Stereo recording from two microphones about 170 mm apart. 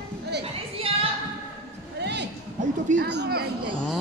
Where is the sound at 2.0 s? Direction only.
90° right; by 3.5 s 70° right (ahead or behind).